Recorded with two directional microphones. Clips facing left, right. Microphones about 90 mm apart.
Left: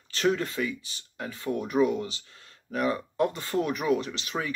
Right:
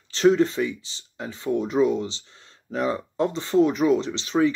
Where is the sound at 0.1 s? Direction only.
25° right (ahead or behind).